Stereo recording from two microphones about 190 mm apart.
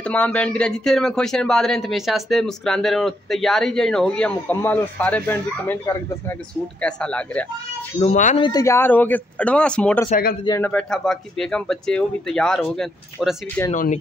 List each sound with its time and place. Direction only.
0.0 s speech: 5° left (ahead or behind)
8.0 s speech: 40° left (ahead or behind)
8.4 s speech: 20° left (ahead or behind); by 13.4 s centre (ahead or behind)
13.7 s speech: 40° left (ahead or behind)